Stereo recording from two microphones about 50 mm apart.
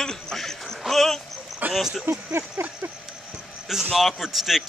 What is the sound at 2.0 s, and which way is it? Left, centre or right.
Speech, right.